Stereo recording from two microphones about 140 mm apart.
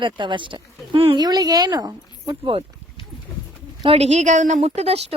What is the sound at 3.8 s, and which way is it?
A woman's voice, 45° right (ahead or behind).